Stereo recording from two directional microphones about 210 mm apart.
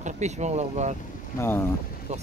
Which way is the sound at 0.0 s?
35° right (ahead or behind).